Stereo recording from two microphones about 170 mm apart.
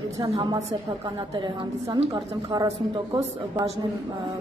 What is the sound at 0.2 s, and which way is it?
Speech, 25° right (ahead or behind).